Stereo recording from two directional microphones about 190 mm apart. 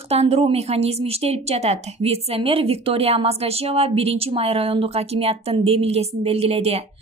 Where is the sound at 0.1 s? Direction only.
35° right (ahead or behind).